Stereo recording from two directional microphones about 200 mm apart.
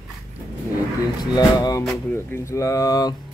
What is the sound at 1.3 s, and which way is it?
Speech, 20° left (ahead or behind).